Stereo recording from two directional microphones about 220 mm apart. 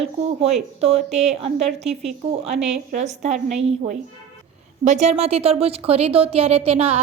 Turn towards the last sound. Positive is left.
turn(degrees=-25)  # may be behind; listen again after turning